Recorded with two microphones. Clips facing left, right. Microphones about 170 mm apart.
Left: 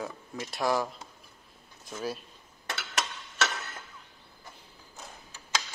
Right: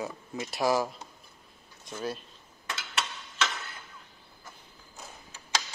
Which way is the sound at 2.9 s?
40° left (ahead or behind).